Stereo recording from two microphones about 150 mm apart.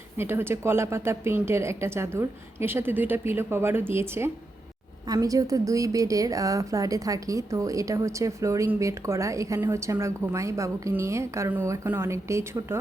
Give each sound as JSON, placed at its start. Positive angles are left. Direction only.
{"t": 0.2, "sound": "a woman's voice", "side_deg": -15}